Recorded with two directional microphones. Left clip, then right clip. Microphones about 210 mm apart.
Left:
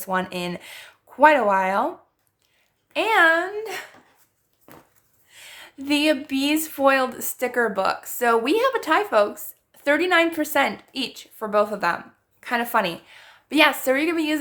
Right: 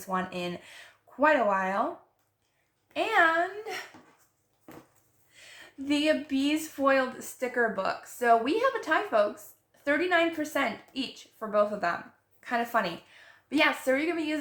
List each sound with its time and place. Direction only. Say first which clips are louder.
0.0 s speech: left 6 dB; 50° left (ahead or behind)
2.9 s speech: left 7 dB; 50° left (ahead or behind)
5.3 s a woman's voice: left 7 dB; 50° left (ahead or behind)